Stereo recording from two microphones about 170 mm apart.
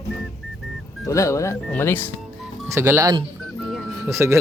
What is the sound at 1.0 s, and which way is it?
Speech, 20° left (ahead or behind).